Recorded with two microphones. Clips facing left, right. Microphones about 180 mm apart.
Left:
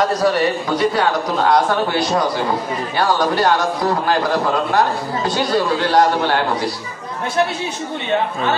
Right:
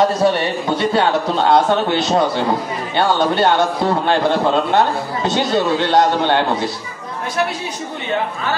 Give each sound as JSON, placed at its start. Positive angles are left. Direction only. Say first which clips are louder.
{"t": 0.0, "sound": "a man's voice", "louder": "right 1 dB", "side_deg": -25}